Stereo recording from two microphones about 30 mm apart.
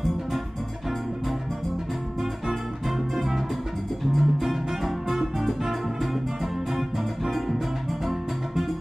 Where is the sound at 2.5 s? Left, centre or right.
Centre.